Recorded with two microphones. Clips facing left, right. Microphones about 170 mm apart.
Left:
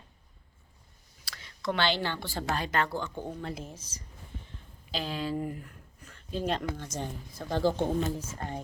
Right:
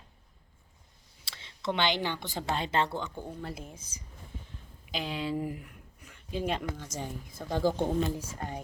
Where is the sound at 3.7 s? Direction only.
55° right (ahead or behind).